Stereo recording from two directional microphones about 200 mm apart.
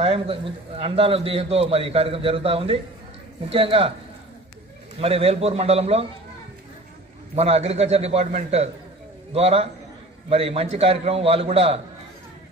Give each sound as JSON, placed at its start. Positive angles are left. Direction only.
{"t": 0.0, "sound": "a man's voice", "side_deg": -30}
{"t": 5.0, "sound": "a man's voice", "side_deg": -30}
{"t": 7.3, "sound": "a man's voice", "side_deg": -30}